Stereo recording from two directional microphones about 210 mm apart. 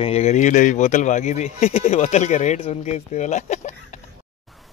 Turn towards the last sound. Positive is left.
turn(degrees=35)  # may be behind; listen again after turning